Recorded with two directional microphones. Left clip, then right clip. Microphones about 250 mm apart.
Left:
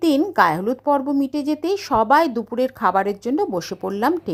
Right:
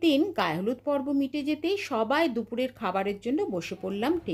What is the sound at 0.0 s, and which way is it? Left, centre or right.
A woman's voice, centre.